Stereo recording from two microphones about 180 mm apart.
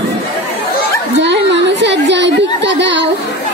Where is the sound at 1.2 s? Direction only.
75° right (ahead or behind).